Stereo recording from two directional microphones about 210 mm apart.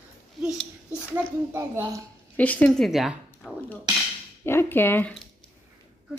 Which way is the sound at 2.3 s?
5° left (ahead or behind).